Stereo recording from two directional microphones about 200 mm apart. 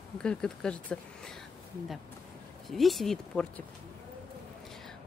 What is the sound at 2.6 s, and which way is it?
Speech, centre (ahead or behind).